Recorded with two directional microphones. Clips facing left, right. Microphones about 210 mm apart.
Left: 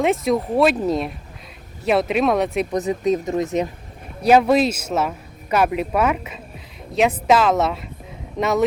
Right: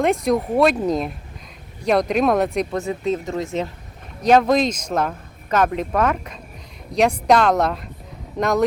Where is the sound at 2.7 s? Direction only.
20° left (ahead or behind).